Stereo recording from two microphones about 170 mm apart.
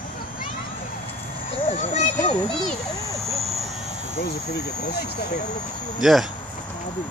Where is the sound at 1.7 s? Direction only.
50° left (ahead or behind).